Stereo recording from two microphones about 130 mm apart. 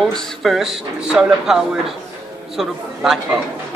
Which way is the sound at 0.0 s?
Centre (ahead or behind).